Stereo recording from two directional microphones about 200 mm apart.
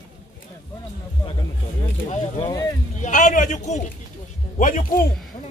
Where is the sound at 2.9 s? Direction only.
35° left (ahead or behind).